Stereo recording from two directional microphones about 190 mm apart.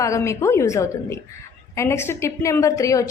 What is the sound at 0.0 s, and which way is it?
A woman's voice, 15° left (ahead or behind).